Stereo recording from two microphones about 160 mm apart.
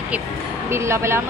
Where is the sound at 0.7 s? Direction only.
15° right (ahead or behind).